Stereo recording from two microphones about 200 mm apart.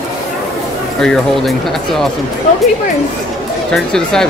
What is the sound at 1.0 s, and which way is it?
Speech, centre (ahead or behind).